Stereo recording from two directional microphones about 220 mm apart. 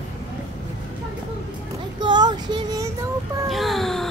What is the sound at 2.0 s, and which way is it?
Child singing, 20° right (ahead or behind).